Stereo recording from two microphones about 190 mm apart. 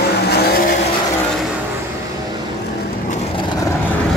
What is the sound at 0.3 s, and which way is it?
Vehicle, 60° left (ahead or behind).